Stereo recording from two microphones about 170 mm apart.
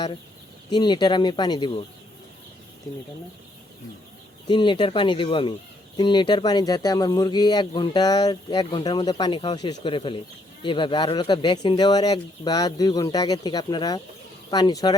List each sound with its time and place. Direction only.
0.7 s speech: 25° left (ahead or behind)
4.4 s speech: 30° left (ahead or behind)